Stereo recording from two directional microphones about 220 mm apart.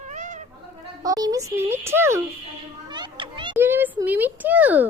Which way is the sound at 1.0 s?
15° right (ahead or behind).